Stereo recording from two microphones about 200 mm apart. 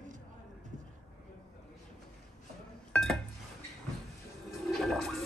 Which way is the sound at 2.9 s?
Centre (ahead or behind).